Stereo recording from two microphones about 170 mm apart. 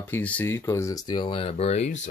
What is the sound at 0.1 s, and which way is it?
Speech, 10° left (ahead or behind).